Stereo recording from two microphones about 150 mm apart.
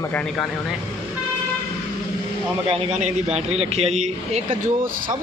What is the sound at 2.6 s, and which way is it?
A man's voice, 45° right (ahead or behind).